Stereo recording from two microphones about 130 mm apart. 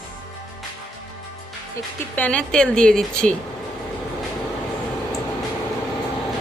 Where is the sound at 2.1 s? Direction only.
10° left (ahead or behind).